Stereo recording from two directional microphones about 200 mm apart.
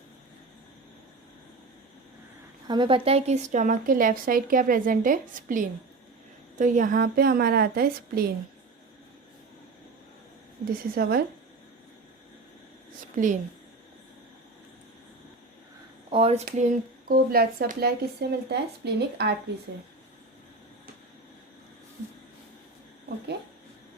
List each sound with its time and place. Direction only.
2.6 s a woman's voice: 25° right (ahead or behind); by 8.3 s 50° right (ahead or behind)
10.9 s a woman's voice: 50° right (ahead or behind)
13.1 s speech: 40° right (ahead or behind)
16.0 s a woman's voice: 30° right (ahead or behind); by 19.3 s 55° right (ahead or behind)